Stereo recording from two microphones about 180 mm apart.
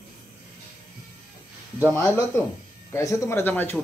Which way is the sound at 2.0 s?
15° left (ahead or behind).